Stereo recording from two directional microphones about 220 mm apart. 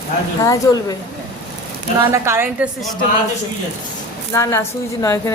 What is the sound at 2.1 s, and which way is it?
Speech, 10° right (ahead or behind).